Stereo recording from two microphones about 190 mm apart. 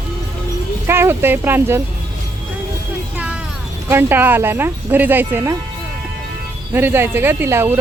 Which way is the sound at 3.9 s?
10° right (ahead or behind).